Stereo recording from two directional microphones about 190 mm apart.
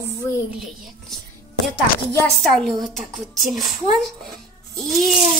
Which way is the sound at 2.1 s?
10° left (ahead or behind).